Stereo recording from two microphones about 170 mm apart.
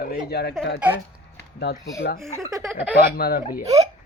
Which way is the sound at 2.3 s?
20° right (ahead or behind).